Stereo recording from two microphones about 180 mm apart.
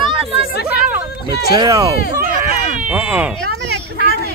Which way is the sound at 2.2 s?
50° right (ahead or behind).